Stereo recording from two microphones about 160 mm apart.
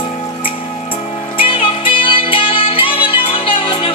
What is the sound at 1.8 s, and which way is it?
Music, 35° left (ahead or behind).